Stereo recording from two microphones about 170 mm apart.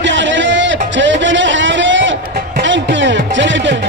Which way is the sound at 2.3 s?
80° right.